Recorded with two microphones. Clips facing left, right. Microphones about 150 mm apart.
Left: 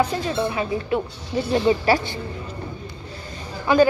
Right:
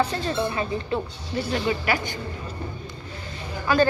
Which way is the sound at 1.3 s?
25° left (ahead or behind).